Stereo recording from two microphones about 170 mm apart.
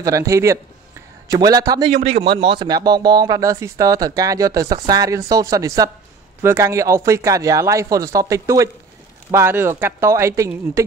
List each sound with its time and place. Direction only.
0.0 s speech: 20° right (ahead or behind)